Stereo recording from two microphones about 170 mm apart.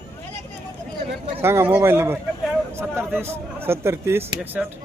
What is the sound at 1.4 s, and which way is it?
A man's voice, 15° right (ahead or behind).